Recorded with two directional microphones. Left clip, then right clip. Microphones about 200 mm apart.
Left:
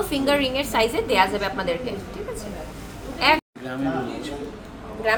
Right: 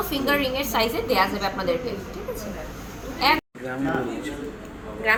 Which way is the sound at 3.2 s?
10° left (ahead or behind).